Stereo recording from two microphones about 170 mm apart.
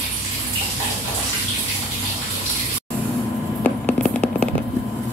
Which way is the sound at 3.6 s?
45° left (ahead or behind).